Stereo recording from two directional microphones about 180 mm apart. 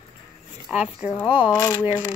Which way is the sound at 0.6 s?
5° right (ahead or behind).